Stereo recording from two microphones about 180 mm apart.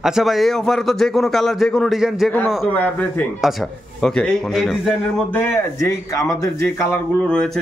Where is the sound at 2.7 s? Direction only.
10° left (ahead or behind).